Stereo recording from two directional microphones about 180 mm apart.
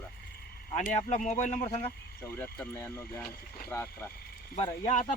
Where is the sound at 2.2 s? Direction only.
10° left (ahead or behind).